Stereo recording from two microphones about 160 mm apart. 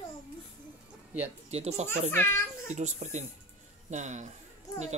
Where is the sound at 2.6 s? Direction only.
45° right (ahead or behind).